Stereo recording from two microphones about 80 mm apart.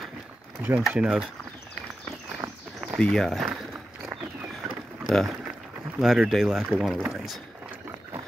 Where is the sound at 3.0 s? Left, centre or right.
Centre.